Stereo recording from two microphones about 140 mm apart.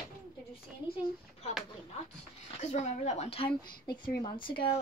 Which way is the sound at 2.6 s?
50° left (ahead or behind).